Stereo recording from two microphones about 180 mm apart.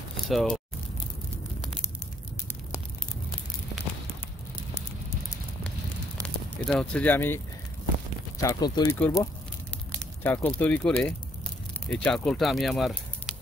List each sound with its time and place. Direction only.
0.3 s speech: centre (ahead or behind)
6.2 s speech: 5° left (ahead or behind)
8.4 s speech: 20° left (ahead or behind); by 13.4 s centre (ahead or behind)